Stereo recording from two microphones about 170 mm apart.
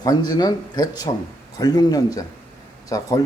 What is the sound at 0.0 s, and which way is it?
A man's voice, 25° left (ahead or behind).